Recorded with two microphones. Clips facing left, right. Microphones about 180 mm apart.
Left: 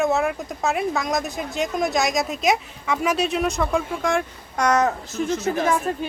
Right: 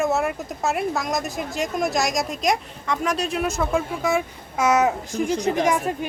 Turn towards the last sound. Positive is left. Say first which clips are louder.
# even
turn(degrees=-15)  # may be behind; listen again after turning